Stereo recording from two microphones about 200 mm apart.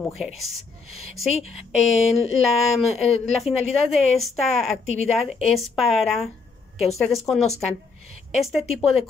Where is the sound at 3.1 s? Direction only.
30° left (ahead or behind).